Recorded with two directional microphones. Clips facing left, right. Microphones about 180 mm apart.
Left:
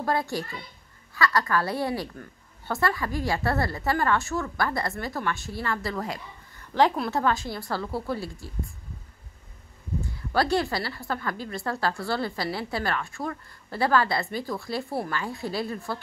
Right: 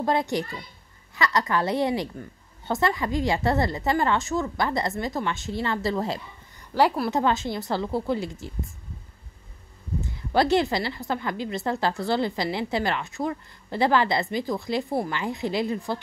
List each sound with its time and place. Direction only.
0.0 s a woman's voice: 20° right (ahead or behind)
6.6 s a woman's voice: 10° right (ahead or behind)
7.2 s a woman's voice: 25° right (ahead or behind)
10.3 s a woman's voice: 20° right (ahead or behind)